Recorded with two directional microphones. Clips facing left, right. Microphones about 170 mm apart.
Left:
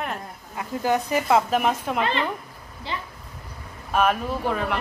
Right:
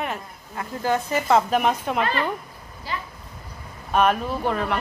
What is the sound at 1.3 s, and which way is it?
Speech, centre (ahead or behind).